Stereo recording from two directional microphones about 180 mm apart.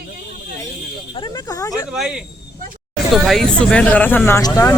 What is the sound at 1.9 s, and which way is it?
Speech, 5° right (ahead or behind).